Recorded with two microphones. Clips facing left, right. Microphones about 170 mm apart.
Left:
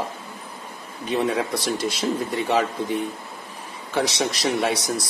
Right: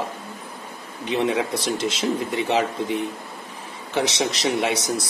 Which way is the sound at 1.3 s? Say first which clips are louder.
Right 1 dB; 25° right (ahead or behind).